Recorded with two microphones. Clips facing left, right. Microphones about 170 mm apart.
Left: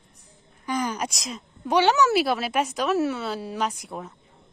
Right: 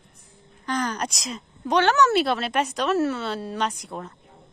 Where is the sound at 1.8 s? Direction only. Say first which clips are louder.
Even; 10° left (ahead or behind).